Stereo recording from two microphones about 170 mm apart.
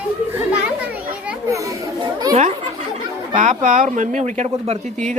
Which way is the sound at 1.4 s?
20° right (ahead or behind).